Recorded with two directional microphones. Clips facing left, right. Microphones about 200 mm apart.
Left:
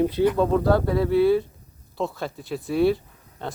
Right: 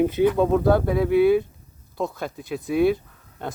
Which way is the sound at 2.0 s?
Centre (ahead or behind).